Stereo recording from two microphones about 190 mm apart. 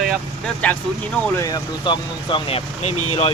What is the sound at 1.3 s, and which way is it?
Speech, 20° left (ahead or behind).